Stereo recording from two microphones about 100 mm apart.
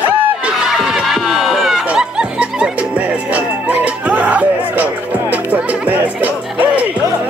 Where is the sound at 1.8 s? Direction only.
10° right (ahead or behind).